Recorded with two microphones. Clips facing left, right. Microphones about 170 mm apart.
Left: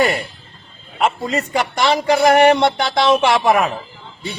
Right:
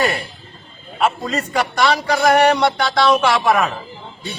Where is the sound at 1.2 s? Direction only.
25° left (ahead or behind).